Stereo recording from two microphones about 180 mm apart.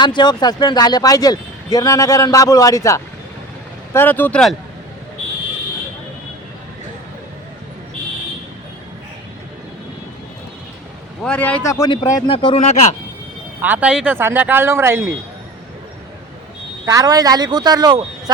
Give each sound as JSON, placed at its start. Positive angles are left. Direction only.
{"t": 0.0, "sound": "a man's voice", "side_deg": 25}
{"t": 11.2, "sound": "a man's voice", "side_deg": 5}
{"t": 12.3, "sound": "speech", "side_deg": 30}
{"t": 13.6, "sound": "speech", "side_deg": -10}
{"t": 16.8, "sound": "speech", "side_deg": -20}